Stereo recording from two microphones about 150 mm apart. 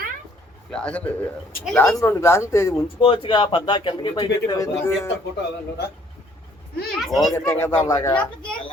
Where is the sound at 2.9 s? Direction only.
35° left (ahead or behind); by 5.1 s 20° left (ahead or behind).